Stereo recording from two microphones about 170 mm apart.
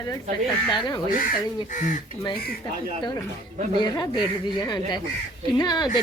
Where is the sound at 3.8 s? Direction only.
25° left (ahead or behind).